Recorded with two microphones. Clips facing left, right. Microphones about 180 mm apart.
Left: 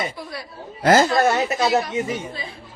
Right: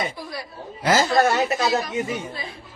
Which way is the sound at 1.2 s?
30° left (ahead or behind).